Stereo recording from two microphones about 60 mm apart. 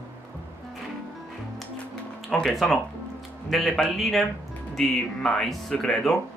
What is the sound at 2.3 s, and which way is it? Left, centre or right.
Speech, centre.